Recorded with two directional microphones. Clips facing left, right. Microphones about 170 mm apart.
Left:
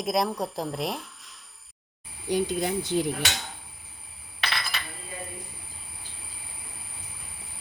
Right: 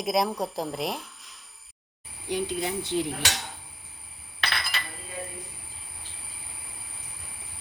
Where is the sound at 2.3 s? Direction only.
40° left (ahead or behind).